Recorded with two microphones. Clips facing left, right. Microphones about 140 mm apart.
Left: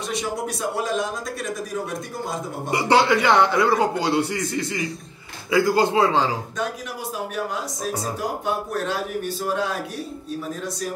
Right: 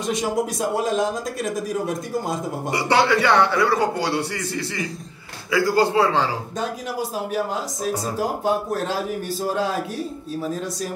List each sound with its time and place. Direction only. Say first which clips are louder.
2.7 s a man's voice: left 1 dB; 20° left (ahead or behind)
8.7 s speech: right 1 dB; 35° right (ahead or behind)